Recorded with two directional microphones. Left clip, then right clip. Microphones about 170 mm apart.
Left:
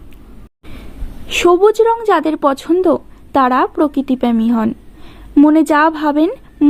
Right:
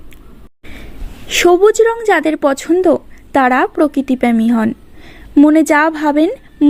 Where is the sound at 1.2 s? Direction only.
15° right (ahead or behind).